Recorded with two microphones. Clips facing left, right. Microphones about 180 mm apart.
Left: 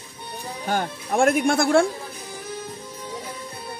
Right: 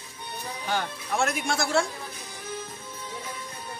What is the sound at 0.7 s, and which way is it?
Speech, 45° left (ahead or behind).